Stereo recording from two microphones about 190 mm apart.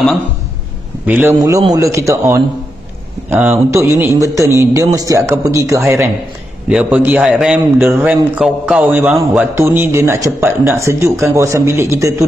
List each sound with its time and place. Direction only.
1.0 s a man's voice: 10° right (ahead or behind)